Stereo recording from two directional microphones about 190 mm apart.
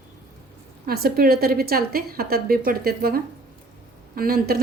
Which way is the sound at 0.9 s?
55° right (ahead or behind).